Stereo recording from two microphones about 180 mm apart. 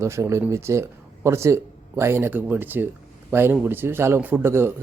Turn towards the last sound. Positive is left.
turn(degrees=-15)  # may be behind; listen again after turning